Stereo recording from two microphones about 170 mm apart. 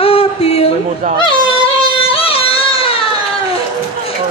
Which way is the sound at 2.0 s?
35° left (ahead or behind).